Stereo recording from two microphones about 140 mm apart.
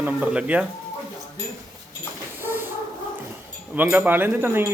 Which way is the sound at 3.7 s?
10° right (ahead or behind).